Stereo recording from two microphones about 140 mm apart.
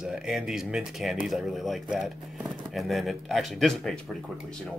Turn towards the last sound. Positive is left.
turn(degrees=5)  # may be behind; listen again after turning